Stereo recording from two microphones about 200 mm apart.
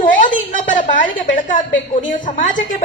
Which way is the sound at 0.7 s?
40° left (ahead or behind).